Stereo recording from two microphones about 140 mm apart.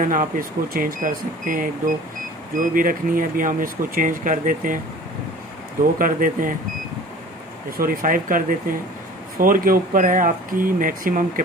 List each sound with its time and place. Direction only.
0.0 s speech: 70° right (ahead or behind)
5.9 s speech: 80° right
7.7 s speech: 90° right